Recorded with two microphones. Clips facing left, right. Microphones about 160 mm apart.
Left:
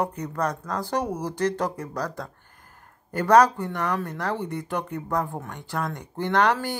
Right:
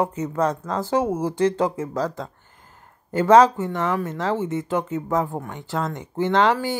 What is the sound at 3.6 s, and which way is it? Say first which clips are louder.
A woman's voice: right 4 dB; 15° right (ahead or behind).